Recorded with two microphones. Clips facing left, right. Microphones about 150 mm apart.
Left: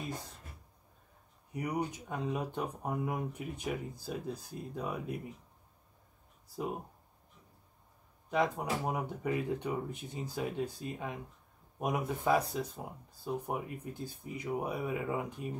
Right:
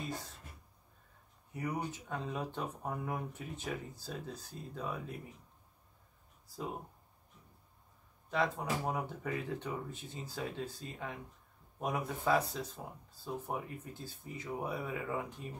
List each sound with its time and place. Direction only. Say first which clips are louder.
1.5 s speech: left 3 dB; 15° left (ahead or behind)
8.3 s speech: left 2 dB; 15° left (ahead or behind)